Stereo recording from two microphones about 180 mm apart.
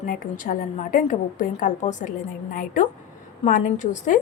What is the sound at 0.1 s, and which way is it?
A woman's voice, 50° left (ahead or behind).